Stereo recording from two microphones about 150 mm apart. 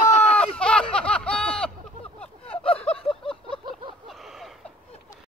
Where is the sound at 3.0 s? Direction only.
35° left (ahead or behind).